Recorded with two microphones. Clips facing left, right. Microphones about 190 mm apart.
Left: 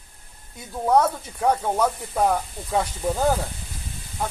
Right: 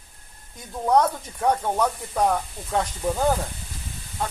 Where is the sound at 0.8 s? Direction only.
5° left (ahead or behind).